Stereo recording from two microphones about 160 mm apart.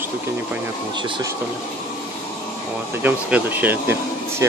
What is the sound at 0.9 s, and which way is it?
Speech, 30° right (ahead or behind).